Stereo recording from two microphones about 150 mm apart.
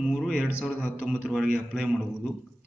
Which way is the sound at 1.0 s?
5° right (ahead or behind).